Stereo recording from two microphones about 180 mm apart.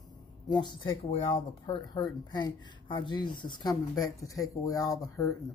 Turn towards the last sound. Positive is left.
turn(degrees=20)  # may be behind; listen again after turning